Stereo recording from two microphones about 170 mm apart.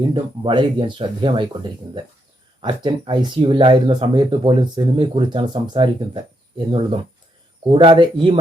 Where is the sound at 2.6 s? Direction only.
25° right (ahead or behind).